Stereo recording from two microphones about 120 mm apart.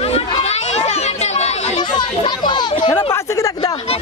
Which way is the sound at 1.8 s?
40° left (ahead or behind).